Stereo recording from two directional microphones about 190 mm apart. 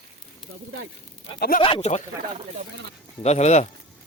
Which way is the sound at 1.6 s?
30° left (ahead or behind).